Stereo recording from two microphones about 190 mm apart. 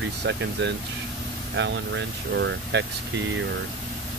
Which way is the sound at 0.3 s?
70° right (ahead or behind).